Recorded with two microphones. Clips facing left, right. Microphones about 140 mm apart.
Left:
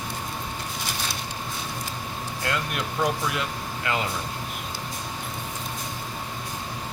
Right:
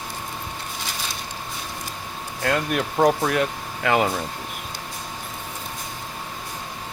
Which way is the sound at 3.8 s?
60° right (ahead or behind).